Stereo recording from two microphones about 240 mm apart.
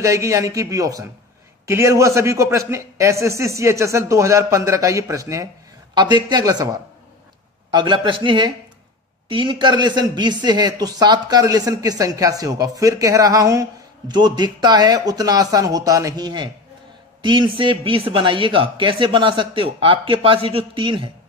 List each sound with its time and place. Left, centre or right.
0.0 s speech: centre